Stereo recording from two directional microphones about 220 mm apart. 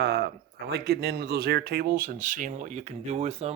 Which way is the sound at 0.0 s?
45° right (ahead or behind).